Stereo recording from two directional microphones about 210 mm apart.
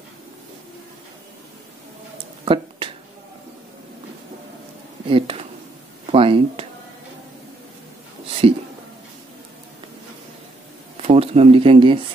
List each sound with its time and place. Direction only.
2.4 s finger snapping: 25° right (ahead or behind)
5.1 s speech: 25° right (ahead or behind)
8.4 s a sound: 25° right (ahead or behind)
11.0 s speech: 30° right (ahead or behind)